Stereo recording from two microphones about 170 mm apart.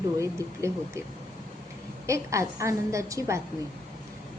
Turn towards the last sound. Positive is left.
turn(degrees=-20)  # may be behind; listen again after turning